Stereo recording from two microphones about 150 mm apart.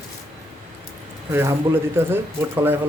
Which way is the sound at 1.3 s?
20° right (ahead or behind).